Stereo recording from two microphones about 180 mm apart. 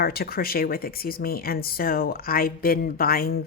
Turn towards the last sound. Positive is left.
turn(degrees=55)  # may be behind; listen again after turning